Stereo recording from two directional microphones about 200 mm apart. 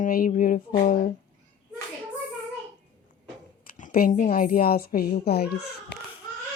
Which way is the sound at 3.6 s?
45° left (ahead or behind).